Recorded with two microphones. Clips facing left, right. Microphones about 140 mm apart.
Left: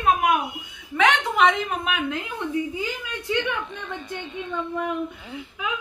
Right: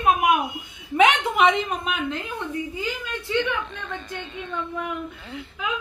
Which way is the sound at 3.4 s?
15° left (ahead or behind).